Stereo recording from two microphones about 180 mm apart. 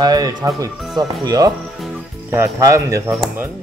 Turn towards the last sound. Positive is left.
turn(degrees=-15)  # may be behind; listen again after turning